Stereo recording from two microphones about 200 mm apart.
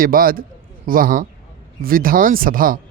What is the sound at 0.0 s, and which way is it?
A woman's voice, 45° right (ahead or behind).